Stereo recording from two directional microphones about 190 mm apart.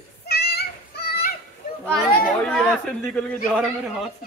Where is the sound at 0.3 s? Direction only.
55° left (ahead or behind).